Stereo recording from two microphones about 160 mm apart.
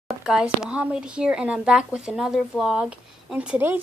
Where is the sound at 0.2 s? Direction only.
5° right (ahead or behind).